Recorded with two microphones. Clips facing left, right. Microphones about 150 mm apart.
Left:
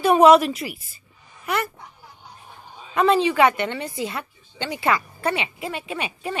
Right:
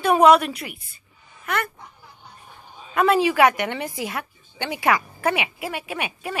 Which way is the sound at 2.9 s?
10° right (ahead or behind).